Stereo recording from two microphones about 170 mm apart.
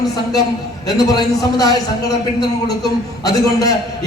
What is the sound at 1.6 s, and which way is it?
A man's voice, 25° left (ahead or behind).